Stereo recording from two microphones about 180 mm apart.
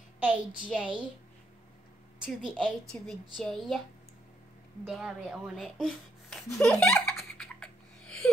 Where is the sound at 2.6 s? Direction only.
5° left (ahead or behind).